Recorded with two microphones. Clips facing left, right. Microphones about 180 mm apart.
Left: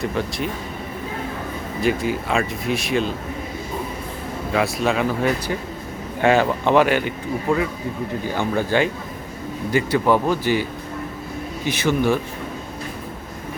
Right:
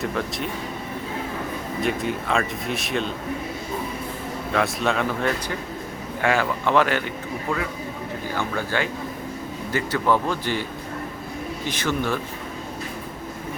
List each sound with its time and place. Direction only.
0.0 s speech: centre (ahead or behind)
1.8 s speech: centre (ahead or behind)
4.5 s speech: centre (ahead or behind)
6.2 s speech: 20° left (ahead or behind)
8.4 s speech: 20° left (ahead or behind)
11.7 s speech: 10° left (ahead or behind)